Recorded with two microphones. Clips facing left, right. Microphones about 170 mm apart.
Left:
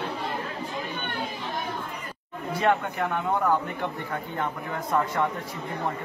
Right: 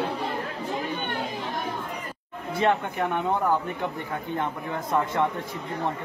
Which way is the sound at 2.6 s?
20° right (ahead or behind).